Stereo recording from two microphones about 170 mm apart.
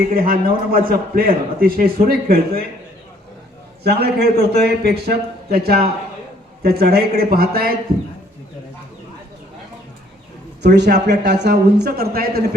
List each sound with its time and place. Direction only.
0.1 s a man's voice: 60° right (ahead or behind)
3.8 s a man's voice: 70° right (ahead or behind)
10.8 s a man's voice: 80° right; by 12.5 s 65° right (ahead or behind)